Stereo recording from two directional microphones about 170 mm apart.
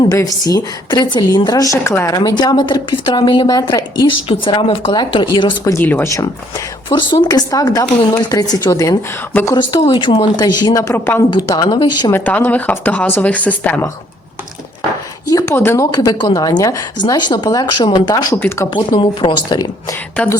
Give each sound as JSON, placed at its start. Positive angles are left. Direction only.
{"t": 0.1, "sound": "a woman's voice", "side_deg": 20}
{"t": 5.7, "sound": "speech", "side_deg": 15}
{"t": 6.9, "sound": "a woman's voice", "side_deg": 25}
{"t": 9.6, "sound": "a woman's voice", "side_deg": 30}
{"t": 12.1, "sound": "speech", "side_deg": 10}
{"t": 15.3, "sound": "a woman's voice", "side_deg": 20}
{"t": 18.7, "sound": "a woman's voice", "side_deg": 25}